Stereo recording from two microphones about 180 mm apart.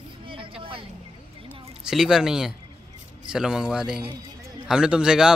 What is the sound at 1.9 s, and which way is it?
A man's voice, centre (ahead or behind).